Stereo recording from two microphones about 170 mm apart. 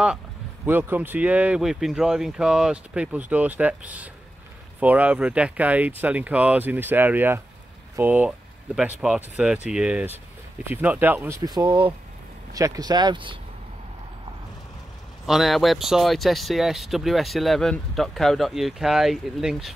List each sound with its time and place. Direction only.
0.7 s speech: 10° right (ahead or behind); by 13.4 s 30° right (ahead or behind)
15.2 s speech: centre (ahead or behind)